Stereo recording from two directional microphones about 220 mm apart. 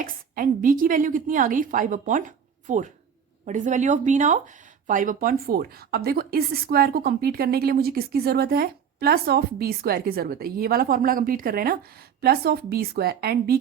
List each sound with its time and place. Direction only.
0.0 s a woman's voice: 40° right (ahead or behind)